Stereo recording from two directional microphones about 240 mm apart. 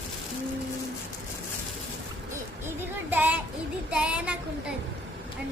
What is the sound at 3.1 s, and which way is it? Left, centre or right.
Speech, centre.